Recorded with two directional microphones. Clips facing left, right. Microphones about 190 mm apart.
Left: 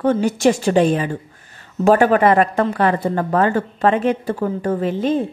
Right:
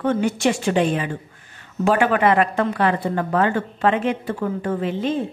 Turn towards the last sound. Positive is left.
turn(degrees=40)  # may be behind; listen again after turning